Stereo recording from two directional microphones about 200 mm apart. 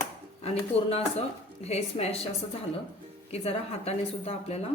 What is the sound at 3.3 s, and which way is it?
Speech, 30° left (ahead or behind).